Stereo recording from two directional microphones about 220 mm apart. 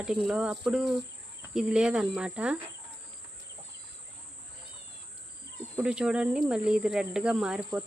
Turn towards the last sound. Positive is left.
turn(degrees=-5)  # may be behind; listen again after turning